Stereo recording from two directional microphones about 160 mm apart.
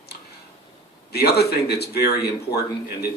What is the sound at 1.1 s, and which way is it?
Speech, 85° left.